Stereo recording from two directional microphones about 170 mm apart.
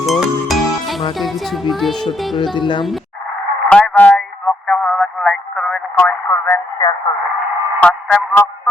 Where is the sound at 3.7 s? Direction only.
5° left (ahead or behind).